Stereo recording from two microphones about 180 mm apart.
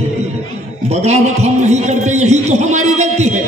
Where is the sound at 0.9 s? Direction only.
35° right (ahead or behind).